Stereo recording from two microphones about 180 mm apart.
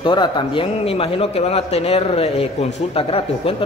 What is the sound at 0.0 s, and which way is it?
Speech, 25° left (ahead or behind).